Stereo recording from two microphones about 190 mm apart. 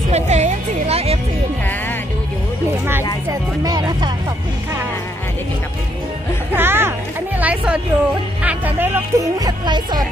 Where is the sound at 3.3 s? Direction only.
20° right (ahead or behind).